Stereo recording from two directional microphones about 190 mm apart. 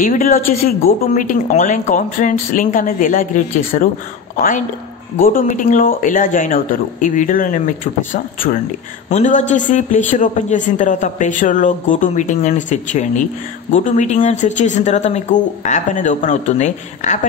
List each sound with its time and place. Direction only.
0.0 s a man's voice: 45° left (ahead or behind)